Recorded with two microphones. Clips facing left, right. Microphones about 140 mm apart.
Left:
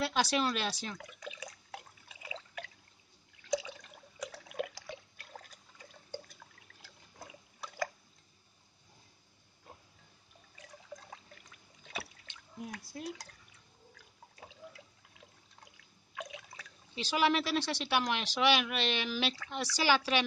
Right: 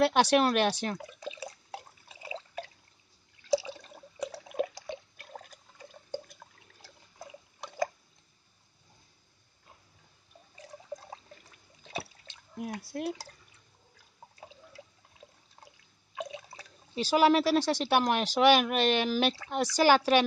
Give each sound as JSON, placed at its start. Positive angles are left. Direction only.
{"t": 0.0, "sound": "speech", "side_deg": -65}
{"t": 0.9, "sound": "drip", "side_deg": -30}
{"t": 3.4, "sound": "water", "side_deg": -30}
{"t": 10.6, "sound": "a sound", "side_deg": -30}
{"t": 12.8, "sound": "speech", "side_deg": -70}
{"t": 14.7, "sound": "water", "side_deg": -30}
{"t": 16.2, "sound": "speech", "side_deg": -30}